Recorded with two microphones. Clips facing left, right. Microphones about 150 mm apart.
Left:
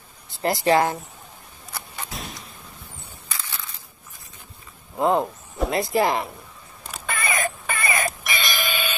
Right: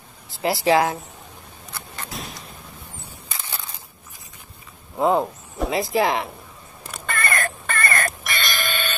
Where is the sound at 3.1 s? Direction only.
25° right (ahead or behind).